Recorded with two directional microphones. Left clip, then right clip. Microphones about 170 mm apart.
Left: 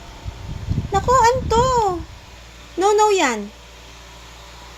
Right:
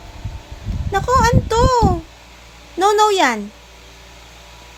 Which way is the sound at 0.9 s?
30° right (ahead or behind).